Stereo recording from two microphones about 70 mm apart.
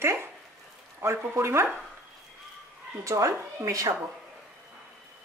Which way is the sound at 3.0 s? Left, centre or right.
Right.